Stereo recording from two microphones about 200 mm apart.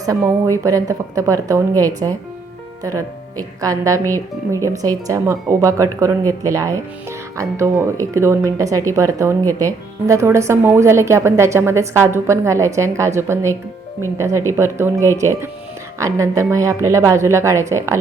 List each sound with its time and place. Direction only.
0.0 s speech: 15° right (ahead or behind)